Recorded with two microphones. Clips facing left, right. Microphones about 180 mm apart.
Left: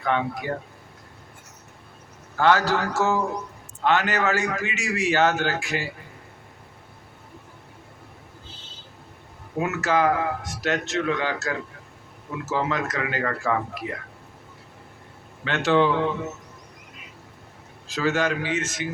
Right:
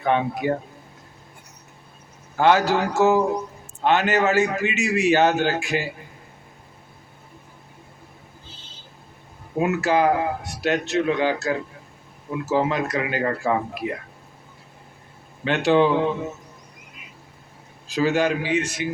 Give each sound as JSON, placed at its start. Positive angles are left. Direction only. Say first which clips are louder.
{"t": 0.0, "sound": "a man's voice", "louder": "right 4 dB", "side_deg": -20}
{"t": 2.3, "sound": "a man's voice", "louder": "right 2 dB", "side_deg": -15}
{"t": 9.6, "sound": "speech", "louder": "right 3 dB", "side_deg": -15}
{"t": 15.4, "sound": "speech", "louder": "right 3 dB", "side_deg": -15}
{"t": 17.8, "sound": "speech", "louder": "right 3 dB", "side_deg": -15}